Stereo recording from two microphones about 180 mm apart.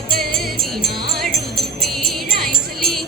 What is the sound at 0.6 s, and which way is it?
Music, centre (ahead or behind).